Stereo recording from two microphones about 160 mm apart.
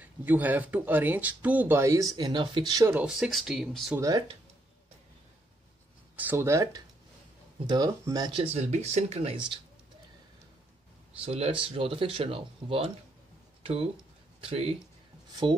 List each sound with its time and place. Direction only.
0.0 s speech: 10° right (ahead or behind)
2.9 s speech: 5° right (ahead or behind)
3.9 s speech: 20° right (ahead or behind)
6.1 s speech: 15° right (ahead or behind)
8.5 s speech: 45° right (ahead or behind)
11.1 s speech: 40° right (ahead or behind)
13.6 s a sound: 40° right (ahead or behind)
14.4 s speech: 35° right (ahead or behind)